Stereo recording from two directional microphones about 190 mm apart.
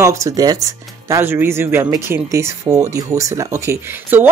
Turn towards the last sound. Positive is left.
turn(degrees=-10)  # may be behind; listen again after turning